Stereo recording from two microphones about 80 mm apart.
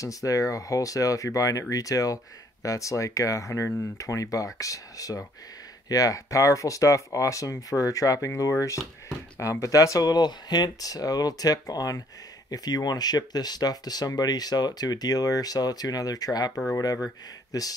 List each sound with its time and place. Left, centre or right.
0.0 s speech: left